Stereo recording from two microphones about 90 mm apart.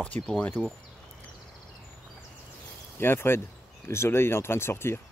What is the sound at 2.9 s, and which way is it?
Speech, 25° left (ahead or behind).